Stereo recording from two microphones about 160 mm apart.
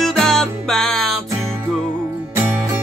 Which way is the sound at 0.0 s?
Centre (ahead or behind).